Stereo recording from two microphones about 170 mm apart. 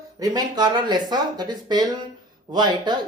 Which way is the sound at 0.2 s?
25° right (ahead or behind).